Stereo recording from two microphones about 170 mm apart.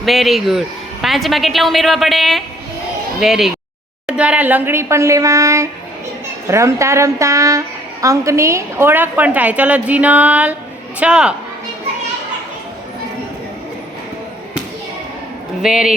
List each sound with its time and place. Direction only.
0.0 s a woman's voice: centre (ahead or behind)
15.6 s a woman's voice: 5° right (ahead or behind)